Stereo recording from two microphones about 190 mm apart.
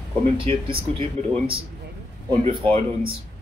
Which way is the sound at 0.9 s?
30° right (ahead or behind).